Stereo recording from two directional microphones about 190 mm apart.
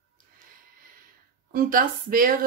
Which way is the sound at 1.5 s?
50° right (ahead or behind).